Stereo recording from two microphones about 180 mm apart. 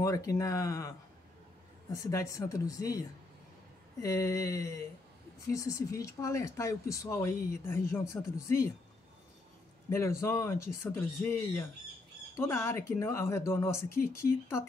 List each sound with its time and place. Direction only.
0.0 s speech: 20° left (ahead or behind)
2.0 s speech: 20° left (ahead or behind)
9.8 s speech: 15° left (ahead or behind)